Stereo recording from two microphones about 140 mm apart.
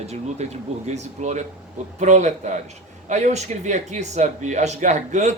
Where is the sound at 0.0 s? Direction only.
50° right (ahead or behind).